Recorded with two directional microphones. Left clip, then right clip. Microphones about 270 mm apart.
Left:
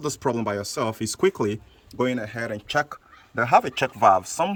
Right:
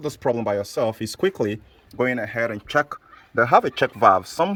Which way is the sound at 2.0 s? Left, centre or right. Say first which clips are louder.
Right 4 dB; centre.